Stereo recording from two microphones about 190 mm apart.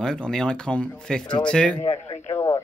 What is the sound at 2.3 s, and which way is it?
Speech, 15° left (ahead or behind).